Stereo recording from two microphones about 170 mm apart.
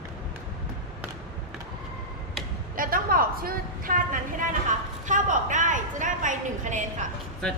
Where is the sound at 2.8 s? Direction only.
60° right (ahead or behind).